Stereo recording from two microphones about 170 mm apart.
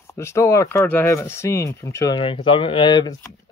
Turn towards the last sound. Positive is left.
turn(degrees=25)  # may be behind; listen again after turning